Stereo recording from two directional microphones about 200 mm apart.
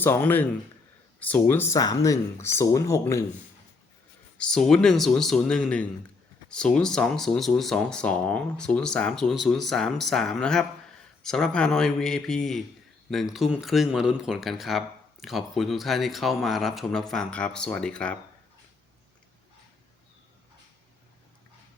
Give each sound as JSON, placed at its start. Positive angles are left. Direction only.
{"t": 0.0, "sound": "speech", "side_deg": 10}
{"t": 4.4, "sound": "speech", "side_deg": 5}